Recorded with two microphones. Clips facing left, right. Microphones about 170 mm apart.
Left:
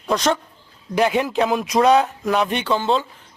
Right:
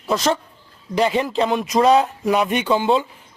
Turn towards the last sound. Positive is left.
turn(degrees=-10)  # may be behind; listen again after turning